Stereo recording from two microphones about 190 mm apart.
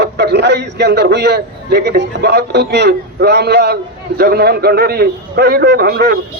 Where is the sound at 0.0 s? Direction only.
60° right (ahead or behind).